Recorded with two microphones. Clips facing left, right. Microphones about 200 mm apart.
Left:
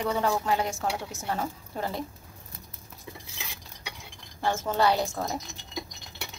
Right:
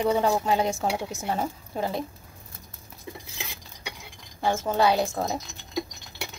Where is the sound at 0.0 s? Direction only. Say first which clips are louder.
Right 4 dB; 20° right (ahead or behind).